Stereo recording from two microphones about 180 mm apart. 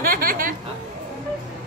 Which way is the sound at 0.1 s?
50° right (ahead or behind).